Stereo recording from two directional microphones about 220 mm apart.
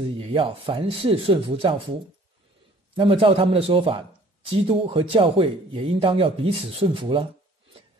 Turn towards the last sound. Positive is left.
turn(degrees=-25)  # may be behind; listen again after turning